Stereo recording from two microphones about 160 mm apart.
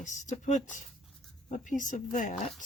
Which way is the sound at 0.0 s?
50° left (ahead or behind).